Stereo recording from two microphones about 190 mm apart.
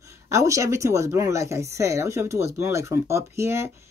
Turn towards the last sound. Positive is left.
turn(degrees=-15)  # may be behind; listen again after turning